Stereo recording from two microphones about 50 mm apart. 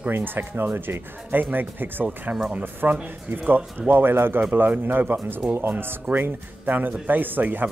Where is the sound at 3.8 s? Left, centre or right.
Right.